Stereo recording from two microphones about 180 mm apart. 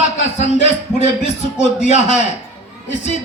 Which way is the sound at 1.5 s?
40° left (ahead or behind).